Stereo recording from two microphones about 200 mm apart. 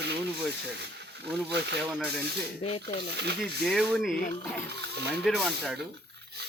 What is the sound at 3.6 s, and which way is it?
Speech, centre (ahead or behind).